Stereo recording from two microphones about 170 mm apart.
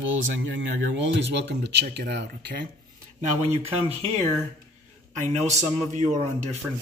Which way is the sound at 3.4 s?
40° right (ahead or behind).